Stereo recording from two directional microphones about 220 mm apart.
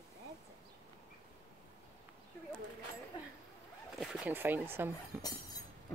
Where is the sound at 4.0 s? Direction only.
5° right (ahead or behind).